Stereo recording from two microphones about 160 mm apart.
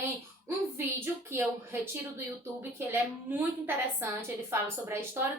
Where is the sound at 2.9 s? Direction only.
15° right (ahead or behind).